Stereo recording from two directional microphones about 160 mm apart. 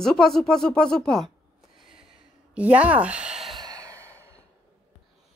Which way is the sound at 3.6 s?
25° right (ahead or behind).